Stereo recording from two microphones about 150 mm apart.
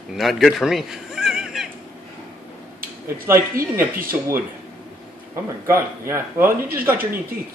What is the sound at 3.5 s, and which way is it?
Speech, 70° right (ahead or behind).